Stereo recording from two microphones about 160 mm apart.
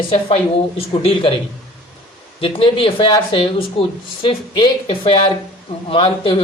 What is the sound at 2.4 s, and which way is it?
Speech, 35° left (ahead or behind).